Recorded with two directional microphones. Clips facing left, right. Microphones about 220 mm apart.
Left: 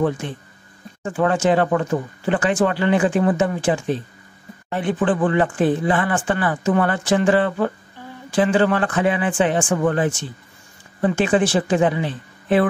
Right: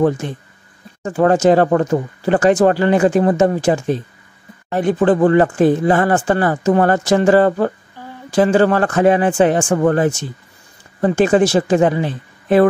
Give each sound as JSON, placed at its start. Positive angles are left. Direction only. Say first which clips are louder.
{"t": 0.2, "sound": "speech", "louder": "right 4 dB", "side_deg": -45}